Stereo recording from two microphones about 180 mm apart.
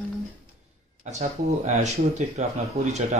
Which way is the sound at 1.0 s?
40° right (ahead or behind).